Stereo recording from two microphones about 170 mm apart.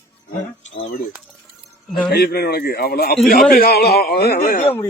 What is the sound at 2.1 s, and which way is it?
Speech, 65° left (ahead or behind).